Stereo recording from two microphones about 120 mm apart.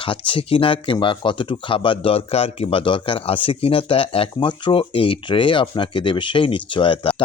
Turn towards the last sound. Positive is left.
turn(degrees=45)  # may be behind; listen again after turning